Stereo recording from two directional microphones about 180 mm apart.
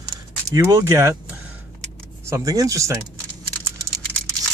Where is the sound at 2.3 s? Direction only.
20° right (ahead or behind).